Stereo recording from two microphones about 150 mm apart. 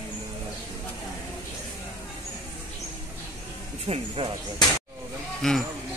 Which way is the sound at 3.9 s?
40° right (ahead or behind).